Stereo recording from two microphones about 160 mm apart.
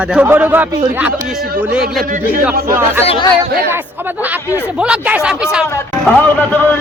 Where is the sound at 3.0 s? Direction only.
35° left (ahead or behind).